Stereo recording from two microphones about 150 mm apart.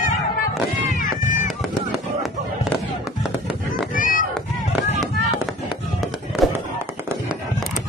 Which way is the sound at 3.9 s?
65° left (ahead or behind).